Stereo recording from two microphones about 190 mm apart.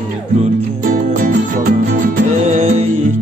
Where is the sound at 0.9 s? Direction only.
45° right (ahead or behind).